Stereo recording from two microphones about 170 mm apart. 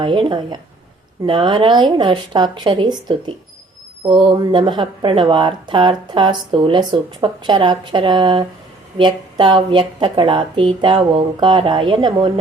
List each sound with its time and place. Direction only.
0.0 s speech: 30° right (ahead or behind)